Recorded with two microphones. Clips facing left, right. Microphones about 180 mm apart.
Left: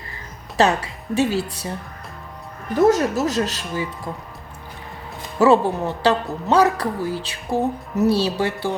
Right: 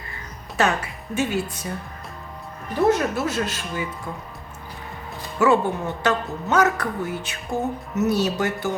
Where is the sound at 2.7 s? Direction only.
40° left (ahead or behind).